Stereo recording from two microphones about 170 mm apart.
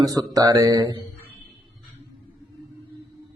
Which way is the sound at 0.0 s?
20° right (ahead or behind).